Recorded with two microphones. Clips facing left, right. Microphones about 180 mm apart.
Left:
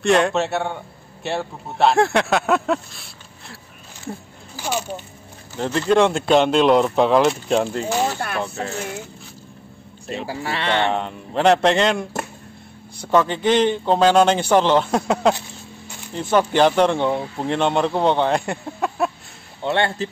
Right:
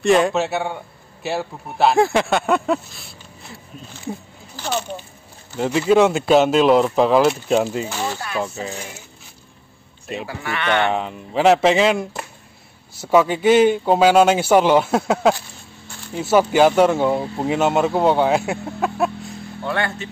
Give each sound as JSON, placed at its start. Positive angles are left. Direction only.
{"t": 0.0, "sound": "a man's voice", "side_deg": 0}
{"t": 4.6, "sound": "speech", "side_deg": 10}
{"t": 5.6, "sound": "a man's voice", "side_deg": -5}
{"t": 10.2, "sound": "speech", "side_deg": 30}
{"t": 10.9, "sound": "a man's voice", "side_deg": -5}
{"t": 19.6, "sound": "speech", "side_deg": 25}